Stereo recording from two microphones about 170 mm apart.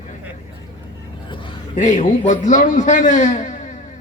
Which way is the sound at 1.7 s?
45° left (ahead or behind).